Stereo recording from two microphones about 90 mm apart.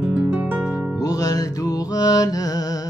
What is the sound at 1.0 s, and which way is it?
Music, 40° left (ahead or behind).